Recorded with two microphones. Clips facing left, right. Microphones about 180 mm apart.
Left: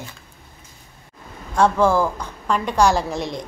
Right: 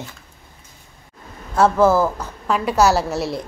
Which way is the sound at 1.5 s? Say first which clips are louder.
Right 2 dB; 5° right (ahead or behind).